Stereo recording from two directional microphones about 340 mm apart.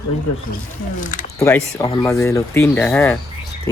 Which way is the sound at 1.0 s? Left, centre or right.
Left.